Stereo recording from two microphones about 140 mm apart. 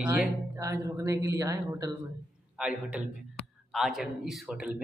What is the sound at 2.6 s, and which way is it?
Speech, 10° right (ahead or behind).